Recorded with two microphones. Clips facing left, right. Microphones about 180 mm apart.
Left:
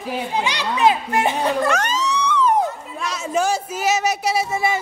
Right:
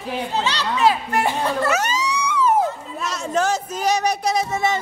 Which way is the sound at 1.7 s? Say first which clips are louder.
Left 1 dB; 10° right (ahead or behind).